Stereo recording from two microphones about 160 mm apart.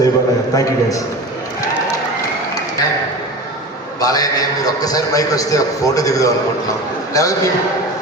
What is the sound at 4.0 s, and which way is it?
A man's voice, 20° left (ahead or behind).